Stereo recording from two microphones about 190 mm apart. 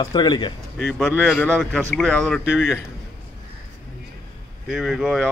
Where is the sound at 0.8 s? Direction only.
Centre (ahead or behind).